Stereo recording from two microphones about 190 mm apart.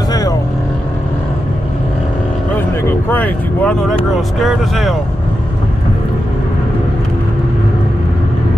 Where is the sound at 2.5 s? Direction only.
10° left (ahead or behind).